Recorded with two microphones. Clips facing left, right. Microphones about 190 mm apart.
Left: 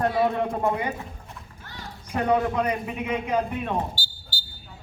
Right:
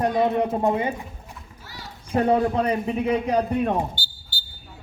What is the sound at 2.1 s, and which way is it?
A man's voice, 30° right (ahead or behind).